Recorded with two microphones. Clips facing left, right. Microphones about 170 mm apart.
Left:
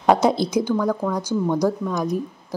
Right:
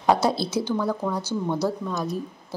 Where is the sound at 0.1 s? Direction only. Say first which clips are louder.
Left 4 dB; 20° left (ahead or behind).